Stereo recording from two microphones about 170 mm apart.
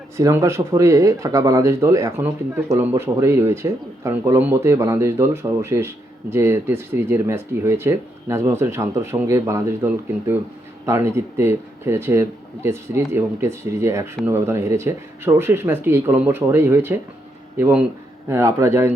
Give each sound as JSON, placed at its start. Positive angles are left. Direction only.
{"t": 0.2, "sound": "speech", "side_deg": -15}